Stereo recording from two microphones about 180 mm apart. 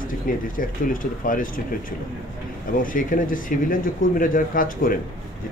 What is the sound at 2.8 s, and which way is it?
Speech, 50° left (ahead or behind).